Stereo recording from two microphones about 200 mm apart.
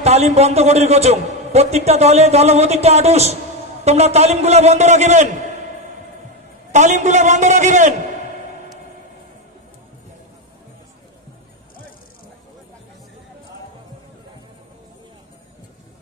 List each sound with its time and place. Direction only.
0.0 s a man's voice: 30° right (ahead or behind)
6.7 s a man's voice: 35° right (ahead or behind)